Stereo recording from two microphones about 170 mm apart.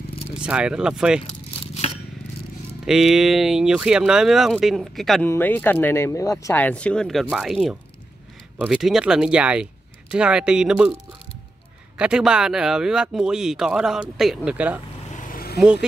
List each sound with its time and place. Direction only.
0.4 s speech: 5° right (ahead or behind)
1.2 s crumpling: 35° left (ahead or behind)
2.8 s speech: 5° right (ahead or behind)
5.2 s speech: 10° left (ahead or behind); by 11.0 s 5° right (ahead or behind)
12.0 s speech: 5° right (ahead or behind)
15.0 s vehicle: 50° left (ahead or behind)
15.6 s speech: 5° right (ahead or behind)